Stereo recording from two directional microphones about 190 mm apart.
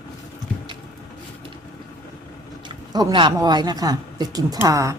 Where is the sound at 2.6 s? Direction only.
20° right (ahead or behind).